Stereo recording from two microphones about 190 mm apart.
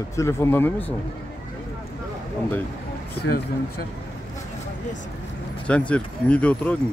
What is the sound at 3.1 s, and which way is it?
Speech, 55° left (ahead or behind).